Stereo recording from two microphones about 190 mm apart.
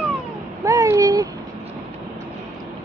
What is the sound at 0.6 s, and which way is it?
Speech, 15° right (ahead or behind).